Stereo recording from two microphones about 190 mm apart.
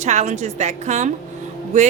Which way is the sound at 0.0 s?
35° right (ahead or behind).